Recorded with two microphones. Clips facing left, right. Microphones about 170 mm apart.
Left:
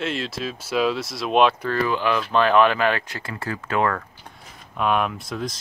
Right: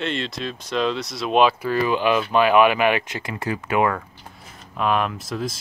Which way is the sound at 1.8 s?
15° right (ahead or behind).